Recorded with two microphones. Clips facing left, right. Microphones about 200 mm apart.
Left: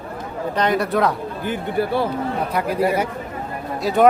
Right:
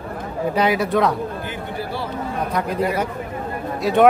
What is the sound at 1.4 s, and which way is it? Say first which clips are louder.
Speech: left 6 dB; 55° left (ahead or behind).